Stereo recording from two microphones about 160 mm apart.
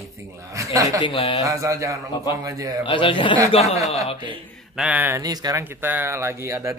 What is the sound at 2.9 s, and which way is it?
Speech, 30° left (ahead or behind).